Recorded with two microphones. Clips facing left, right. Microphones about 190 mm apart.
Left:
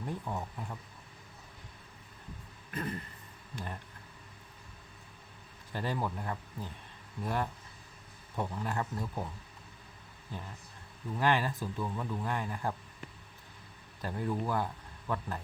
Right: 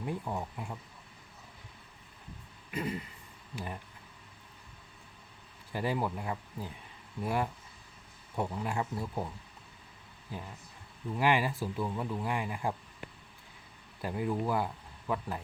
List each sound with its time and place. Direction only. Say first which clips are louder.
0.0 s speech: right 2 dB; 10° right (ahead or behind)
2.6 s a sound: right 2 dB; 10° right (ahead or behind)
3.5 s speech: right 2 dB; 10° right (ahead or behind)
5.7 s speech: right 2 dB; 10° right (ahead or behind)
10.3 s speech: right 1 dB; 10° right (ahead or behind)
14.0 s speech: right 2 dB; 10° right (ahead or behind)